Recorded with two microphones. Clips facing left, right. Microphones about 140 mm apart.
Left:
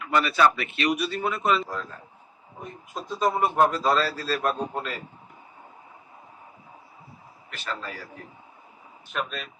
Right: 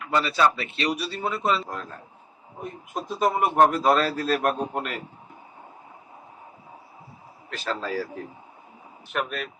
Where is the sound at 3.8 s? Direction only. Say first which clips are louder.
Right 3 dB; 55° right (ahead or behind).